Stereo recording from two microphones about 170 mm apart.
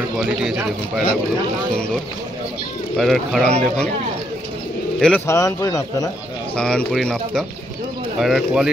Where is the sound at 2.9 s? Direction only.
Centre (ahead or behind).